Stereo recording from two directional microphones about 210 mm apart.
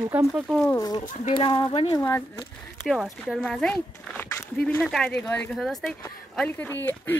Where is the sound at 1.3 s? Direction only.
25° left (ahead or behind).